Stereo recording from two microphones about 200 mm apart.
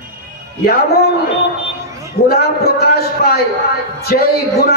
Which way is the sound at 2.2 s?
50° left (ahead or behind).